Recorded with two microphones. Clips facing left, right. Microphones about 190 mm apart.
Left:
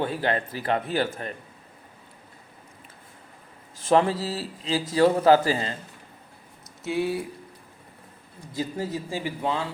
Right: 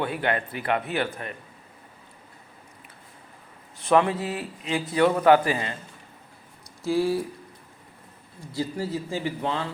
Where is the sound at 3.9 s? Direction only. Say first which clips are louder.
Even; 35° left (ahead or behind).